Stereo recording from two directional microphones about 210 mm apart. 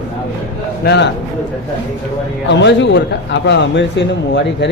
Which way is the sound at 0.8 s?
55° left (ahead or behind).